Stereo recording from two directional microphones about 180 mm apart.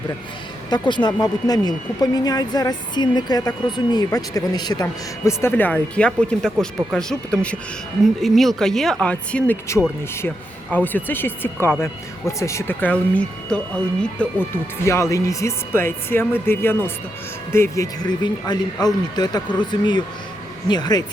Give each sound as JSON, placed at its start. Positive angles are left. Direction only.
{"t": 0.7, "sound": "speech", "side_deg": 25}